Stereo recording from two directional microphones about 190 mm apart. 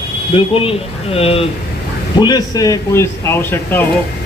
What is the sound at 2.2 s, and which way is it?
Speech, 20° left (ahead or behind).